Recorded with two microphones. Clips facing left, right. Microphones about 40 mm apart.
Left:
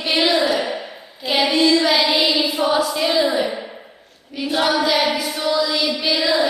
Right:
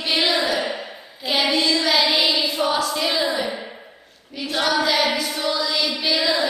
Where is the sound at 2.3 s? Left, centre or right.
Centre.